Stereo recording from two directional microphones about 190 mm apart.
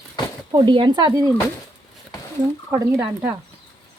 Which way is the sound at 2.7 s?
10° right (ahead or behind).